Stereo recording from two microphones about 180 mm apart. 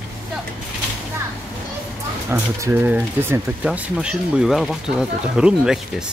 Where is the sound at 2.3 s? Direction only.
10° right (ahead or behind).